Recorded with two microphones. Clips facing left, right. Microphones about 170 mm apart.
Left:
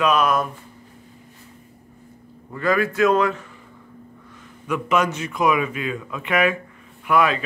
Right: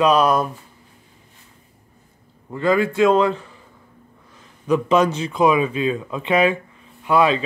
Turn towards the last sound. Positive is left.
turn(degrees=-25)  # may be behind; listen again after turning